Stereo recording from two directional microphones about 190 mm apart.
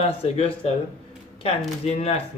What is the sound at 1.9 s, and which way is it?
Speech, 35° left (ahead or behind).